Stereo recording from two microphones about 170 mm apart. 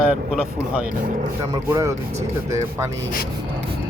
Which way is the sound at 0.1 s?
5° right (ahead or behind).